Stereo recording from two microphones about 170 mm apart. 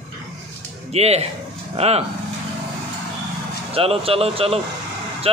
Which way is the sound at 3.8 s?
35° right (ahead or behind).